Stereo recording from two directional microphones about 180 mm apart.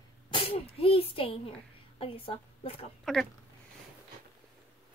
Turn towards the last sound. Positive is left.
turn(degrees=0)  # may be behind; listen again after turning